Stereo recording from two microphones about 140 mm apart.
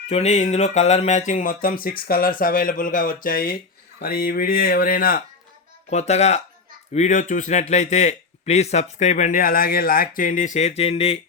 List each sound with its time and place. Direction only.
0.1 s speech: 50° left (ahead or behind); by 5.2 s 90° left
5.9 s a man's voice: 50° left (ahead or behind)